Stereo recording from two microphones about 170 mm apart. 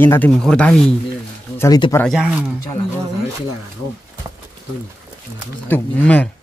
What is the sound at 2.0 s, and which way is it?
Speech, 5° right (ahead or behind).